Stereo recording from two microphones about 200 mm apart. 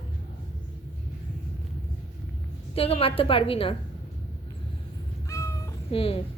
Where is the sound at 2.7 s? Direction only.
30° left (ahead or behind).